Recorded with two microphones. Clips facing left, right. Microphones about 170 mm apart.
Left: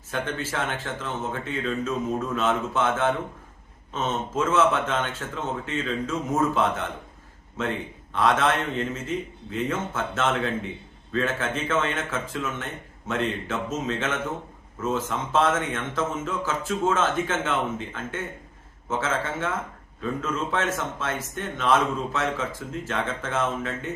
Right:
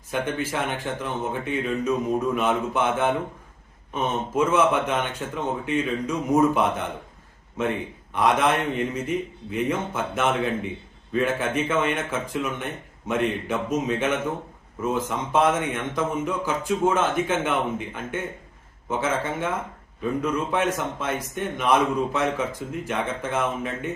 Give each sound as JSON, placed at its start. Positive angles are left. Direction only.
{"t": 0.1, "sound": "a man's voice", "side_deg": -15}
{"t": 20.5, "sound": "a man's voice", "side_deg": -15}